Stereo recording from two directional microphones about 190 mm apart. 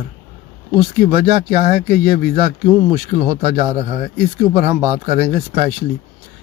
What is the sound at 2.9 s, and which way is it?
Speech, 25° right (ahead or behind).